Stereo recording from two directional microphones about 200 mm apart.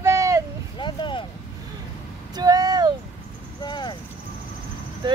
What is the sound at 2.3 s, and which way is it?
Speech, 20° right (ahead or behind).